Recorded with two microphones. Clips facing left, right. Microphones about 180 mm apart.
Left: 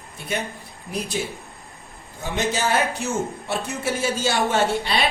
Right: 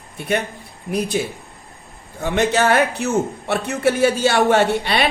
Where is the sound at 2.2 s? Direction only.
65° right (ahead or behind).